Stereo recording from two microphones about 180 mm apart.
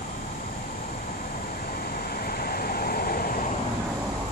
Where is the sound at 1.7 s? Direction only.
55° left (ahead or behind).